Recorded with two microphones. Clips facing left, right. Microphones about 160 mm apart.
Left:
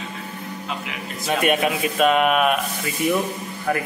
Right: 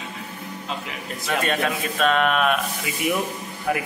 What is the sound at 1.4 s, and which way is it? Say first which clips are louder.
A man's voice: left 6 dB; 15° left (ahead or behind).